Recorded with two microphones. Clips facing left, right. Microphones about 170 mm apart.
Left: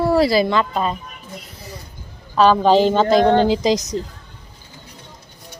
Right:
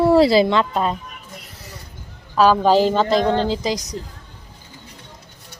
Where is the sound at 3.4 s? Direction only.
15° left (ahead or behind).